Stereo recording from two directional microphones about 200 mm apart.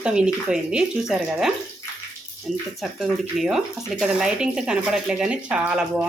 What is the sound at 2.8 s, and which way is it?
Speech, centre (ahead or behind).